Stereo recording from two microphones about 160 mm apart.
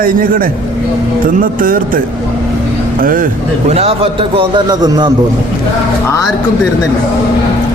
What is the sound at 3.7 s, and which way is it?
A man's voice, 40° right (ahead or behind).